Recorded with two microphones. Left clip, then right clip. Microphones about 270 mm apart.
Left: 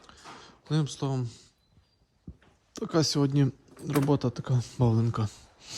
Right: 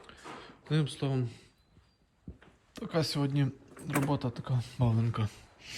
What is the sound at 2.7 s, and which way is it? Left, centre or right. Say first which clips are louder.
Speech: left 5 dB; left.